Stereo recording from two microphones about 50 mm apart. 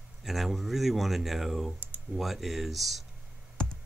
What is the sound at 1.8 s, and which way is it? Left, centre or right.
Computer keyboard, right.